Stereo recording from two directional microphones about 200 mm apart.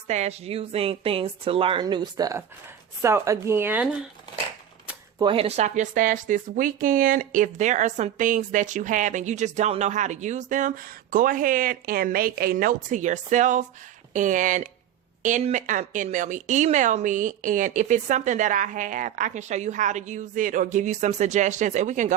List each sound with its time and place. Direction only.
0.1 s a woman's voice: 35° right (ahead or behind); by 3.8 s 10° right (ahead or behind)
5.2 s speech: 25° right (ahead or behind)